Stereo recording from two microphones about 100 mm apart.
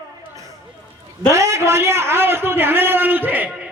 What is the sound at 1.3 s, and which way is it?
A man's voice, 30° right (ahead or behind).